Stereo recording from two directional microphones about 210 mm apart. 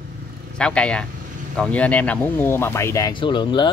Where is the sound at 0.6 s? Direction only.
5° left (ahead or behind).